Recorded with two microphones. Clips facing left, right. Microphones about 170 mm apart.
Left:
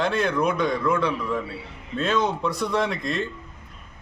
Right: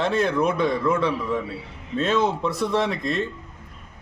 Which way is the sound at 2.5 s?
30° right (ahead or behind).